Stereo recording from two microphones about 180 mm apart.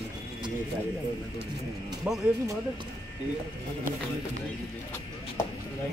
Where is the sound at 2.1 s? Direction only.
5° right (ahead or behind).